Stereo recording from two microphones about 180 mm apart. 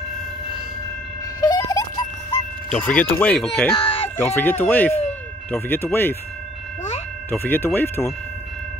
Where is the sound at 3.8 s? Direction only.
30° left (ahead or behind).